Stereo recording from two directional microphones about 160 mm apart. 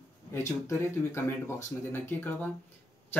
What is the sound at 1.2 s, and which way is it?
Speech, 15° left (ahead or behind).